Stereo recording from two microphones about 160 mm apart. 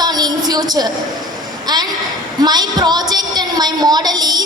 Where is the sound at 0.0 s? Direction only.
25° right (ahead or behind).